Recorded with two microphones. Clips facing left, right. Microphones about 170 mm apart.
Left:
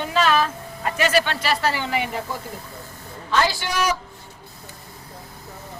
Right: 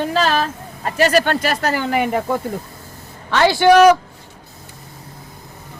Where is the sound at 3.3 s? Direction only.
70° right (ahead or behind).